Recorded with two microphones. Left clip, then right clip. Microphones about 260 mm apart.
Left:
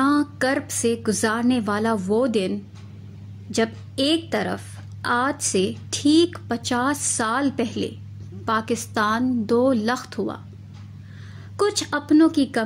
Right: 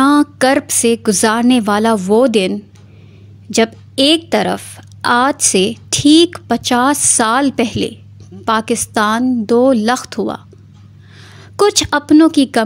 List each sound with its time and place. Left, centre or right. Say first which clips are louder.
0.0 s a woman's voice: right 9 dB; right
11.5 s a woman's voice: right 10 dB; right